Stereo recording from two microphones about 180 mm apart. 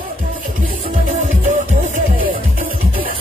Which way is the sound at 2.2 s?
55° right (ahead or behind).